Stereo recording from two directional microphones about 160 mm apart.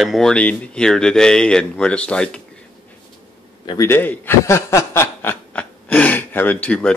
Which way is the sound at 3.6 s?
30° left (ahead or behind).